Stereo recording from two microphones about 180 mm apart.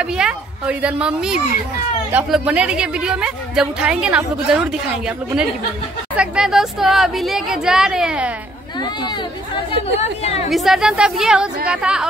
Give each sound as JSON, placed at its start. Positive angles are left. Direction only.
{"t": 0.0, "sound": "a woman's voice", "side_deg": -5}
{"t": 8.7, "sound": "speech", "side_deg": 25}
{"t": 10.5, "sound": "a woman's voice", "side_deg": 0}